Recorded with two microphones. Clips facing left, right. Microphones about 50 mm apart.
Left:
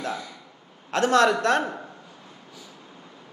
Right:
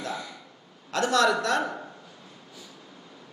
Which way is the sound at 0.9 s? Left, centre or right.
Left.